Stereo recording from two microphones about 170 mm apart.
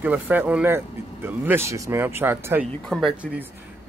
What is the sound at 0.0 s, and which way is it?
Speech, 10° right (ahead or behind).